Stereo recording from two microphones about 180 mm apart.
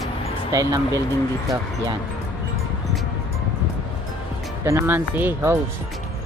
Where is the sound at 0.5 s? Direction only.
20° right (ahead or behind).